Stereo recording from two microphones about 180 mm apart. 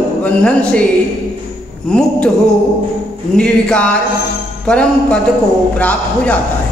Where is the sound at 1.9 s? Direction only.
5° left (ahead or behind).